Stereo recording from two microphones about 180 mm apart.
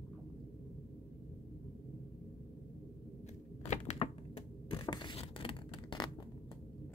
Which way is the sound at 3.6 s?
40° left (ahead or behind).